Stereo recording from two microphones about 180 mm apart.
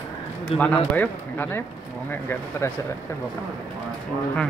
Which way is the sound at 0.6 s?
10° left (ahead or behind).